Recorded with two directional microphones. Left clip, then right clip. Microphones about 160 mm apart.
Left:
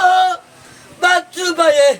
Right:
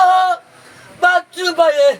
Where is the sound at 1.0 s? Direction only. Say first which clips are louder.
Even; 15° left (ahead or behind).